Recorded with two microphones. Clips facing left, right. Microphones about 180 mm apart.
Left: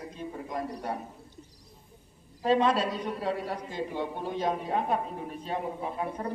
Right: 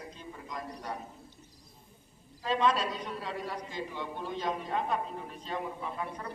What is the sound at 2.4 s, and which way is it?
A man's voice, 55° left (ahead or behind).